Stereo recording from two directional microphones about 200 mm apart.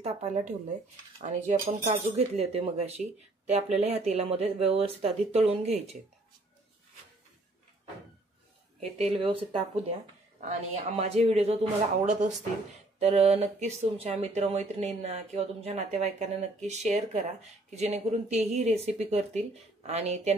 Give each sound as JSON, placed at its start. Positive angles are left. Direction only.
{"t": 0.0, "sound": "speech", "side_deg": -35}
{"t": 8.7, "sound": "speech", "side_deg": -30}